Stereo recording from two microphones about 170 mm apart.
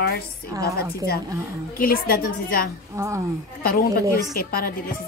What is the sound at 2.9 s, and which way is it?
Speech, 15° right (ahead or behind).